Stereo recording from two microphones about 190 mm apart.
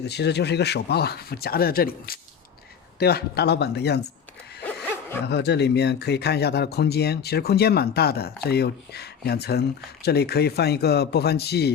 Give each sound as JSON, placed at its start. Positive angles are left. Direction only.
{"t": 0.0, "sound": "speech", "side_deg": 60}
{"t": 4.6, "sound": "music", "side_deg": 10}
{"t": 5.2, "sound": "speech", "side_deg": 60}